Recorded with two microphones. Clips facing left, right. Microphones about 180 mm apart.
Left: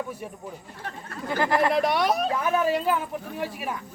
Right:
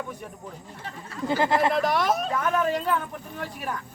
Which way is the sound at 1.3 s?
25° right (ahead or behind).